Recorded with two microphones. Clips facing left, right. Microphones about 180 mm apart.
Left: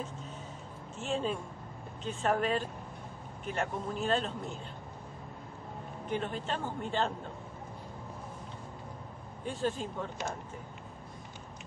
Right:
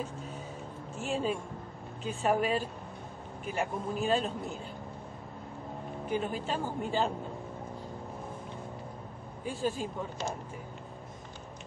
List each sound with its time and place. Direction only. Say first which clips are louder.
0.9 s speech: right 1 dB; 10° right (ahead or behind)
6.0 s speech: right 2 dB; 5° right (ahead or behind)
9.4 s speech: right 1 dB; 10° right (ahead or behind)